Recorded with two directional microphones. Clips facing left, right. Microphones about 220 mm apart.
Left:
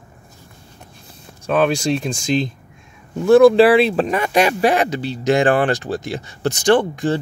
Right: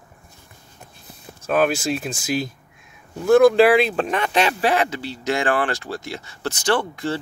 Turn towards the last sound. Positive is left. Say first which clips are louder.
# left 6 dB
turn(degrees=15)  # may be behind; listen again after turning